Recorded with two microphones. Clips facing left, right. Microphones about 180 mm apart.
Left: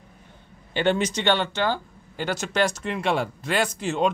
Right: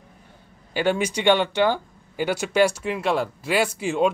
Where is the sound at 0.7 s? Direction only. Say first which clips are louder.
Even; 10° right (ahead or behind).